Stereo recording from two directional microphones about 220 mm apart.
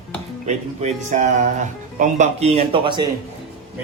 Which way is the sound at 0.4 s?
30° right (ahead or behind).